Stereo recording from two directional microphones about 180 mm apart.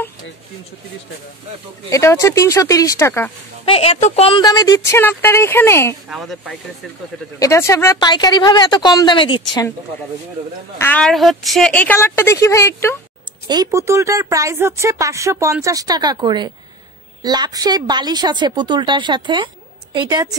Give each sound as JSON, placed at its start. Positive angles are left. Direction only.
{"t": 1.9, "sound": "speech", "side_deg": 15}
{"t": 3.6, "sound": "speech", "side_deg": 30}
{"t": 6.0, "sound": "speech", "side_deg": 0}
{"t": 7.3, "sound": "speech", "side_deg": 15}
{"t": 10.8, "sound": "speech", "side_deg": 10}
{"t": 13.5, "sound": "a woman's voice", "side_deg": -20}